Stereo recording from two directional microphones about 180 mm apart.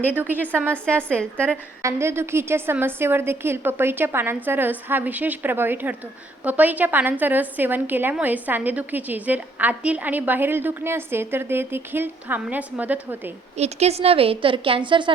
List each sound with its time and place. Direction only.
0.1 s a woman's voice: 10° right (ahead or behind)
13.6 s a woman's voice: 35° right (ahead or behind)